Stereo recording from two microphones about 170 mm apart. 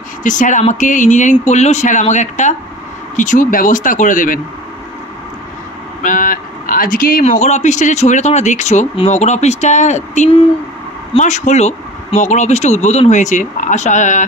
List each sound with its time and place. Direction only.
0.2 s speech: 50° left (ahead or behind)
6.0 s speech: 50° left (ahead or behind)